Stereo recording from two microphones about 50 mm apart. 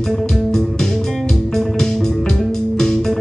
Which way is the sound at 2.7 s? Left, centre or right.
Centre.